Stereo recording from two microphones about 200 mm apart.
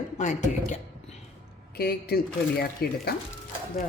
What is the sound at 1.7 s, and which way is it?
Speech, 50° left (ahead or behind).